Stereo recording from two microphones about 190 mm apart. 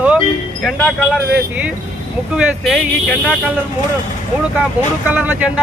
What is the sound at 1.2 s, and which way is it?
Speech, 55° right (ahead or behind).